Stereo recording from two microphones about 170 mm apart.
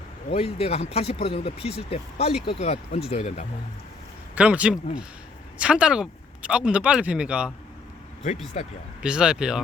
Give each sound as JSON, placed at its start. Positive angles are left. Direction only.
{"t": 0.3, "sound": "speech", "side_deg": 35}
{"t": 4.4, "sound": "speech", "side_deg": -5}
{"t": 9.0, "sound": "speech", "side_deg": -5}